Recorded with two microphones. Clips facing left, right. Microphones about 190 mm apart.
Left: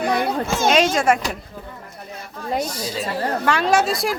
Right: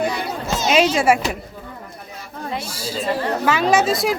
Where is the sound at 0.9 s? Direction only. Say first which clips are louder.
Right 2 dB; 5° right (ahead or behind).